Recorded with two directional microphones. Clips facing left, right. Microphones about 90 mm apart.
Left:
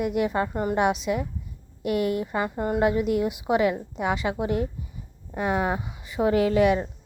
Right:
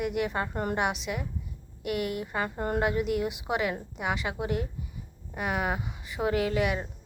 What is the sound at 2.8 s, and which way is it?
A woman's voice, 25° left (ahead or behind).